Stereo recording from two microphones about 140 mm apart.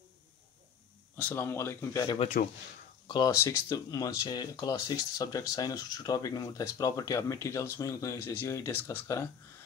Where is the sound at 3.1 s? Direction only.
30° left (ahead or behind).